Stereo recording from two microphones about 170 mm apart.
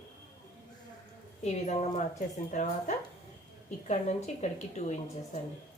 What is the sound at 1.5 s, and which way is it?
A woman's voice, 40° left (ahead or behind).